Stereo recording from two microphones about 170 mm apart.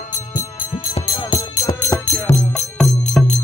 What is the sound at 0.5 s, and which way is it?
Music, 30° left (ahead or behind).